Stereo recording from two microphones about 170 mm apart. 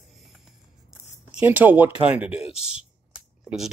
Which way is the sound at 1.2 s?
10° right (ahead or behind).